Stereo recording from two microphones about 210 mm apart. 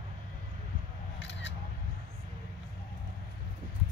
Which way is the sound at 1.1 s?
60° left (ahead or behind).